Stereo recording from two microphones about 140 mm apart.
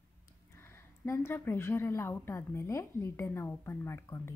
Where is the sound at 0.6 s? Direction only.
20° left (ahead or behind).